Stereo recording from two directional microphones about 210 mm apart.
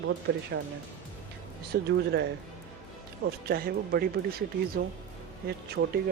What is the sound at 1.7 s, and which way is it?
Speech, 50° right (ahead or behind).